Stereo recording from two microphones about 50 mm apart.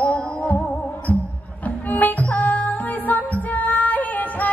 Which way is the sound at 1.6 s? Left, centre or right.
Left.